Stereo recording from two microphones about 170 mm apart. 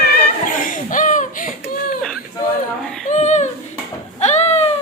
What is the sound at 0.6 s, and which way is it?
Chuckle, 50° left (ahead or behind).